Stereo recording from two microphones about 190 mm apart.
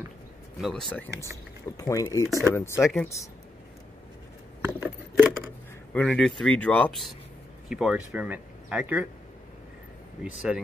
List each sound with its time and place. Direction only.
0.6 s speech: centre (ahead or behind)
1.8 s speech: 20° left (ahead or behind)
2.8 s speech: centre (ahead or behind)
4.6 s a sound: 5° right (ahead or behind)
5.9 s speech: 5° left (ahead or behind)